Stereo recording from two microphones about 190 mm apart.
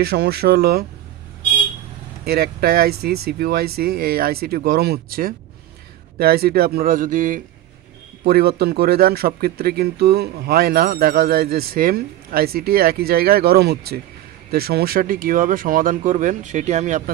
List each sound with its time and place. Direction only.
0.0 s speech: 60° right (ahead or behind)
2.2 s speech: 55° right (ahead or behind)
8.2 s speech: 55° right (ahead or behind)